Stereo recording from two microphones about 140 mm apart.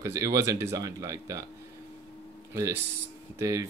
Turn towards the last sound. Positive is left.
turn(degrees=-25)  # may be behind; listen again after turning